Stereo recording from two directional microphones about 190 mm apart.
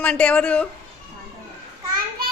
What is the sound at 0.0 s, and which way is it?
Speech, 5° left (ahead or behind).